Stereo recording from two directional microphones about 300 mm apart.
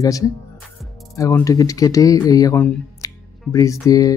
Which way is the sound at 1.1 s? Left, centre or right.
Centre.